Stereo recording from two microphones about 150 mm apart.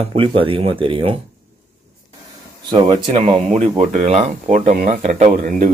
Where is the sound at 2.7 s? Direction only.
30° right (ahead or behind).